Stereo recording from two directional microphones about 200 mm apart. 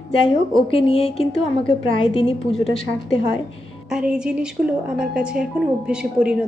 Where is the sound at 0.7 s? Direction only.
30° left (ahead or behind).